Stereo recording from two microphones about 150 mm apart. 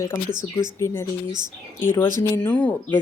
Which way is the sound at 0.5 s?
20° left (ahead or behind).